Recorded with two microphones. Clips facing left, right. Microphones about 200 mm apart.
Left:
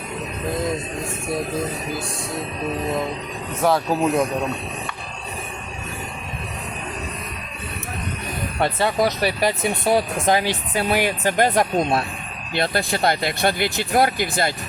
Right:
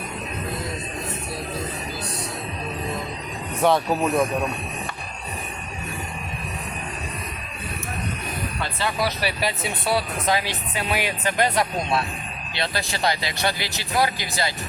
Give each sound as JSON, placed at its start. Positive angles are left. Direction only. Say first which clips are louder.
{"t": 3.6, "sound": "speech", "louder": "even", "side_deg": 0}
{"t": 8.5, "sound": "speech", "louder": "left 8 dB", "side_deg": 55}
{"t": 9.0, "sound": "speech", "louder": "left 5 dB", "side_deg": 45}